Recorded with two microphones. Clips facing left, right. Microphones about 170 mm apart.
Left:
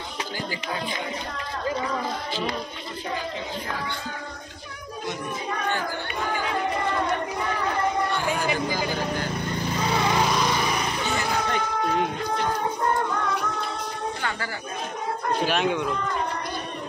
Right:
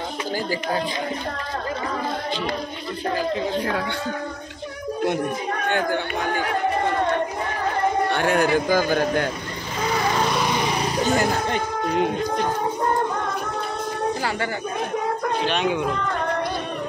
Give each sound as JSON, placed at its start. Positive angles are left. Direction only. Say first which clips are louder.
{"t": 5.7, "sound": "speech", "louder": "right 7 dB", "side_deg": -60}
{"t": 8.1, "sound": "speech", "louder": "right 6 dB", "side_deg": -65}
{"t": 10.8, "sound": "speech", "louder": "right 6 dB", "side_deg": -40}
{"t": 15.4, "sound": "speech", "louder": "even", "side_deg": 0}